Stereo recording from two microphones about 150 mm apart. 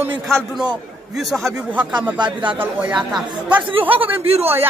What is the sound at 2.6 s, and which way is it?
A man's voice, 10° right (ahead or behind).